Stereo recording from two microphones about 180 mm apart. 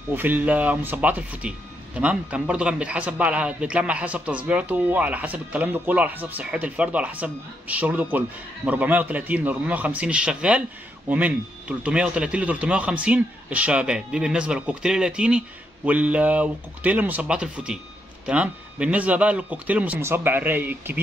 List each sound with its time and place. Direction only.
0.1 s a man's voice: 10° right (ahead or behind)